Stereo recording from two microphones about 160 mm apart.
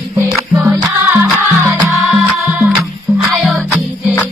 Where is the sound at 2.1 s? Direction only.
5° right (ahead or behind).